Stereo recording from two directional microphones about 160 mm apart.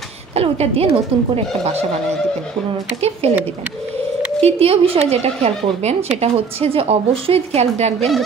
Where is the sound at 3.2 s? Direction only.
40° right (ahead or behind).